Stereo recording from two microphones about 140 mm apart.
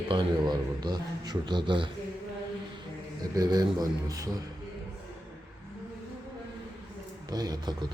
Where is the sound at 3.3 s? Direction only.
30° right (ahead or behind).